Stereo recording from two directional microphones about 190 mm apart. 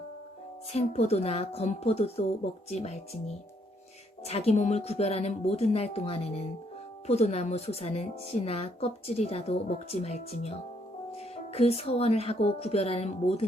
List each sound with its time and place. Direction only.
0.7 s a woman's voice: 35° left (ahead or behind)
4.3 s a woman's voice: 35° left (ahead or behind)
11.5 s a woman's voice: 30° left (ahead or behind)